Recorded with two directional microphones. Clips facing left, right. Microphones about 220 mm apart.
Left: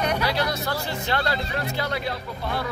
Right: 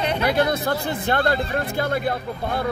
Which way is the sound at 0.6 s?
50° right (ahead or behind).